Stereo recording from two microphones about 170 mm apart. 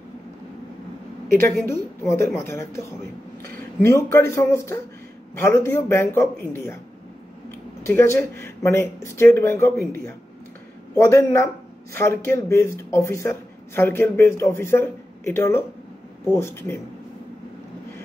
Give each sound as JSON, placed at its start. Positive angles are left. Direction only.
{"t": 1.6, "sound": "speech", "side_deg": 15}
{"t": 7.8, "sound": "speech", "side_deg": 15}